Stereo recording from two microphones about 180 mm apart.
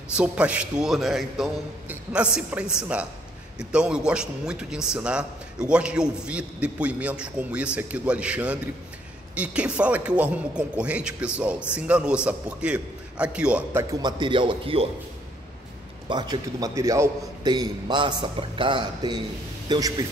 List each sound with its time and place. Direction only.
0.1 s a man's voice: 5° right (ahead or behind)
14.0 s a man's voice: 25° right (ahead or behind)
16.1 s a man's voice: 25° right (ahead or behind)